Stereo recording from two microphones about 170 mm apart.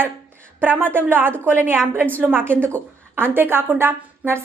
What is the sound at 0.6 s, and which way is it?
A woman's voice, 10° right (ahead or behind).